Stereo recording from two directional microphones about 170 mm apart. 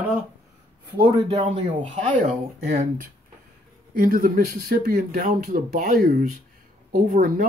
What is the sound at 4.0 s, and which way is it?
Speech, 55° right (ahead or behind).